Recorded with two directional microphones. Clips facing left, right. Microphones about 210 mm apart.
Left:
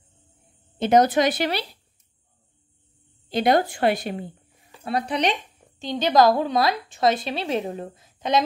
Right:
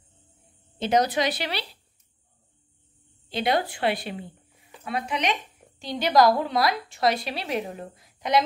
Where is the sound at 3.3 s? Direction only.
45° left (ahead or behind).